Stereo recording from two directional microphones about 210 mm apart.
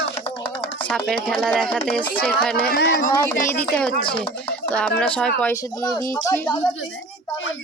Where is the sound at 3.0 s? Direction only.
15° left (ahead or behind).